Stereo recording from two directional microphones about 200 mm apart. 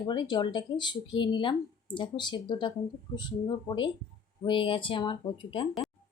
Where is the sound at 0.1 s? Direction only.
20° left (ahead or behind).